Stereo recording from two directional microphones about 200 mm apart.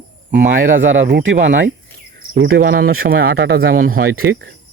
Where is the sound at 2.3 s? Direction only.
50° right (ahead or behind).